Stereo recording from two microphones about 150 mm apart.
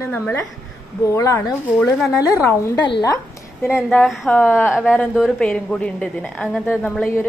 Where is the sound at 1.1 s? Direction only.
20° left (ahead or behind).